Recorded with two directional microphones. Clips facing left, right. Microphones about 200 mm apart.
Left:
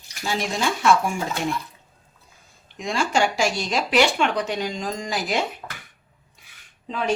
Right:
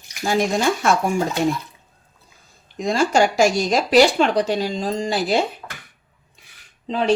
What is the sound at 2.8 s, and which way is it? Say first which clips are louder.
Speech: right 5 dB; 40° right (ahead or behind).